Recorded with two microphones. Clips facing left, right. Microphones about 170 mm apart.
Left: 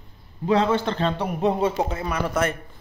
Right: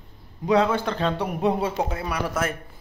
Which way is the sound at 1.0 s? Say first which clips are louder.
Left 1 dB; 10° right (ahead or behind).